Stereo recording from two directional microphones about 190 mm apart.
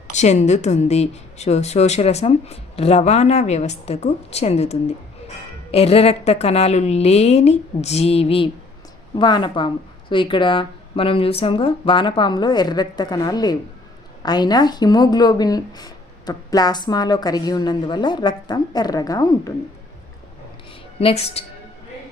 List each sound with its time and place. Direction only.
0.2 s a woman's voice: 35° left (ahead or behind); by 19.5 s 20° left (ahead or behind)
21.0 s a woman's voice: 30° left (ahead or behind)